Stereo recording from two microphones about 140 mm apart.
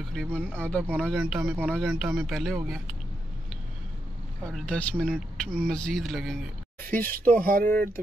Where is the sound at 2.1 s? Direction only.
Centre (ahead or behind).